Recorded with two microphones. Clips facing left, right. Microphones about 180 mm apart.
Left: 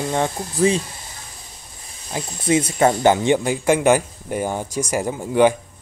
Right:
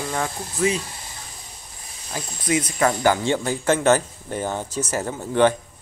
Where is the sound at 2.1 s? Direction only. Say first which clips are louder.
Left 4 dB; 25° left (ahead or behind); by 5.6 s 10° left (ahead or behind).